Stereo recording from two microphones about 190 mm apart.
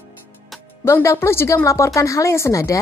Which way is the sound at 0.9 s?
15° left (ahead or behind).